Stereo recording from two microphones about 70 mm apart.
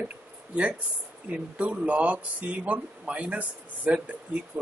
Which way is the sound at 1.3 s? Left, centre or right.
Right.